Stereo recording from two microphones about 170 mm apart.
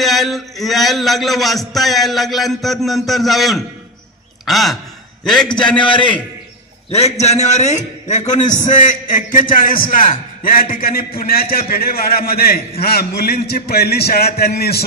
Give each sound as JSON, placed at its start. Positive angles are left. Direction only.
{"t": 0.0, "sound": "a sound", "side_deg": 0}
{"t": 5.2, "sound": "a man's voice", "side_deg": 0}
{"t": 5.8, "sound": "a man's voice", "side_deg": 30}